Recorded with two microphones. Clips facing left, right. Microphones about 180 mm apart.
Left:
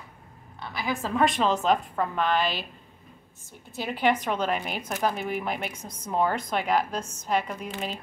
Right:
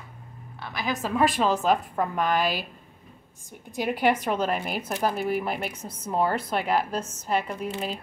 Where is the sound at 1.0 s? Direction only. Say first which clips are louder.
Right 1 dB; 5° right (ahead or behind).